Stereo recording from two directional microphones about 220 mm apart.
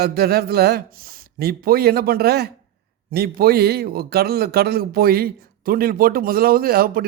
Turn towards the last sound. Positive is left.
turn(degrees=-40)  # may be behind; listen again after turning